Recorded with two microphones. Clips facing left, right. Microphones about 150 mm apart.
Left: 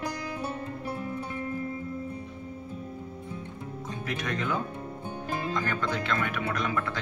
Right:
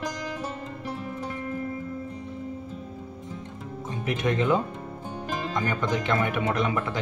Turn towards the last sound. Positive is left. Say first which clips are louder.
# right 4 dB
turn(degrees=-20)  # may be behind; listen again after turning